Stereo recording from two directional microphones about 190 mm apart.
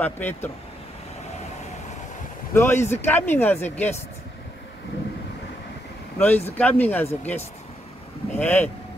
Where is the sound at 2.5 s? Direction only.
15° left (ahead or behind).